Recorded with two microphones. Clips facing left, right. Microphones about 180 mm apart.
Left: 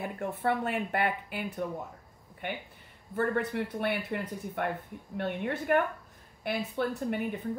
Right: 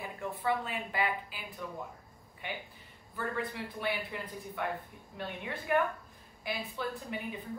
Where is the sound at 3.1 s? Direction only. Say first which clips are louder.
Left 7 dB; 60° left (ahead or behind).